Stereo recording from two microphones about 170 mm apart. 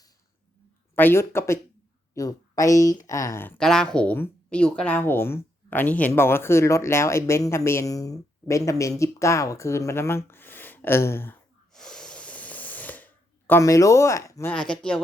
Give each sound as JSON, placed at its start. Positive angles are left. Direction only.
{"t": 0.9, "sound": "a woman's voice", "side_deg": 15}
{"t": 11.7, "sound": "a sound", "side_deg": 5}
{"t": 14.5, "sound": "speech", "side_deg": 5}